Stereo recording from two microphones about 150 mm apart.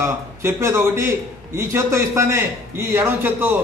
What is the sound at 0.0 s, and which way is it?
A man's voice, 20° right (ahead or behind).